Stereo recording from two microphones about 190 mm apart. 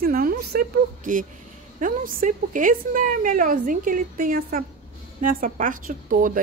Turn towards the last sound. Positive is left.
turn(degrees=-45)  # may be behind; listen again after turning